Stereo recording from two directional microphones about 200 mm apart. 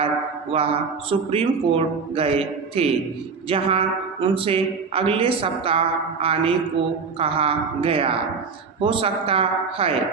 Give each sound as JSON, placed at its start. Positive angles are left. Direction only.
{"t": 0.5, "sound": "speech", "side_deg": -30}